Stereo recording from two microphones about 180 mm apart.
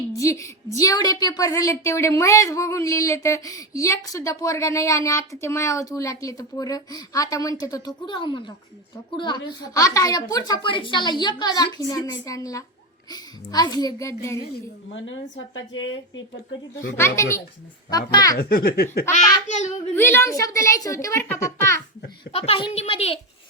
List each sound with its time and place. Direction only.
0.2 s a woman's voice: 15° left (ahead or behind)
15.5 s speech: 90° left
17.9 s a woman's voice: 20° left (ahead or behind)
18.3 s speech: 60° left (ahead or behind)
19.1 s a child's voice: 40° left (ahead or behind)
20.0 s a woman's voice: 15° left (ahead or behind)
22.3 s a child's voice: 35° left (ahead or behind)